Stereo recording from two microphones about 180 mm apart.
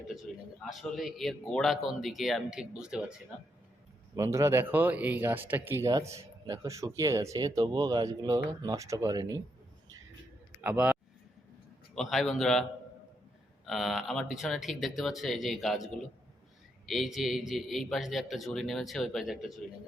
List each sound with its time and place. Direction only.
0.3 s a man's voice: centre (ahead or behind)
4.1 s speech: 15° right (ahead or behind)
10.6 s a man's voice: 10° right (ahead or behind)
11.9 s a man's voice: centre (ahead or behind)
13.7 s a man's voice: centre (ahead or behind)
16.8 s a man's voice: centre (ahead or behind)